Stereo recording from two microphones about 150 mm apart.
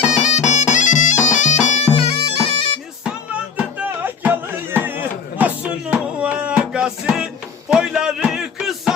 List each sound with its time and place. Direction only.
0.2 s bagpipes: 50° left (ahead or behind)
1.9 s bagpipes: 40° left (ahead or behind)
3.6 s music: 10° right (ahead or behind)